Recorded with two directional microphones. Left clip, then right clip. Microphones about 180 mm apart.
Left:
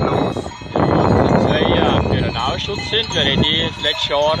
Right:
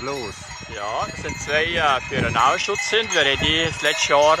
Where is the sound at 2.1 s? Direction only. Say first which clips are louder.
Right 2 dB; 15° left (ahead or behind).